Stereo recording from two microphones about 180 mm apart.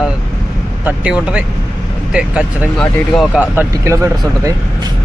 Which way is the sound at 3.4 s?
15° right (ahead or behind).